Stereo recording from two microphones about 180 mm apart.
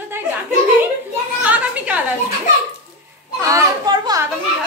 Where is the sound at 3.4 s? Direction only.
20° right (ahead or behind).